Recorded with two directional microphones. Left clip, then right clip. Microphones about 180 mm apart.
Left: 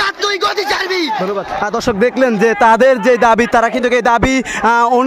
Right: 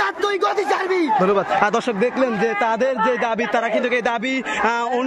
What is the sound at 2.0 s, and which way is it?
Speech, 50° left (ahead or behind).